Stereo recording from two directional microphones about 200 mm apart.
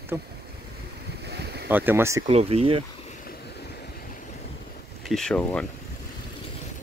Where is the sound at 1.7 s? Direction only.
10° right (ahead or behind).